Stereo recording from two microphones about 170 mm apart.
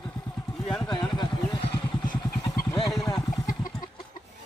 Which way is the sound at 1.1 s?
25° left (ahead or behind).